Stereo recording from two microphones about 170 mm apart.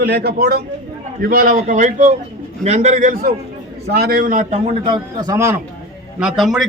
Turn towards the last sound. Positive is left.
turn(degrees=0)  # may be behind; listen again after turning